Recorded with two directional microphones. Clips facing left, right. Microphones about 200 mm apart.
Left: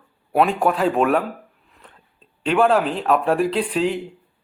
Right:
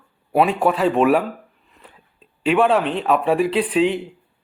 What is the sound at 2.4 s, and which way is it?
A man's voice, centre (ahead or behind).